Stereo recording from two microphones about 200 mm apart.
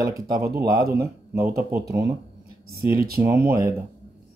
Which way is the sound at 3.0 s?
50° right (ahead or behind).